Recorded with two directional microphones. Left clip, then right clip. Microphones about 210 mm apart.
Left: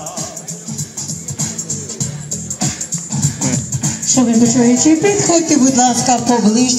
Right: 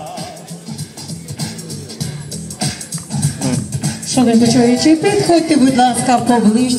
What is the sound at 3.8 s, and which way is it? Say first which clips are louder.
Speech: left 2 dB; 55° left (ahead or behind).